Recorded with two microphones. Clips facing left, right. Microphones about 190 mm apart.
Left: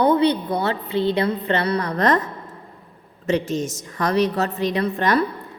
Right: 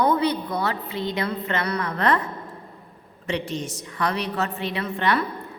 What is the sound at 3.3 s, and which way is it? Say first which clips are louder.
A woman's voice: left 6 dB; 45° left (ahead or behind).